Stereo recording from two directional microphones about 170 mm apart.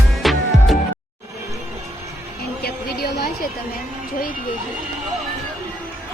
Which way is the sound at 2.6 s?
65° left (ahead or behind).